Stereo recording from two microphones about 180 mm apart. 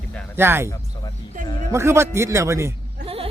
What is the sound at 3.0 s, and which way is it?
Sheep, 30° right (ahead or behind).